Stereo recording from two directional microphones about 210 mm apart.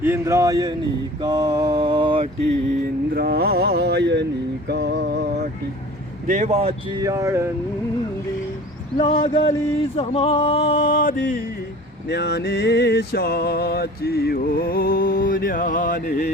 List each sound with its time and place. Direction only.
0.0 s speech: 10° right (ahead or behind)
3.2 s mantra: 45° right (ahead or behind)
6.2 s speech: 35° right (ahead or behind); by 7.4 s 15° right (ahead or behind)
9.0 s a sound: 20° left (ahead or behind)
11.0 s music: 40° left (ahead or behind)
12.0 s music: 55° left (ahead or behind)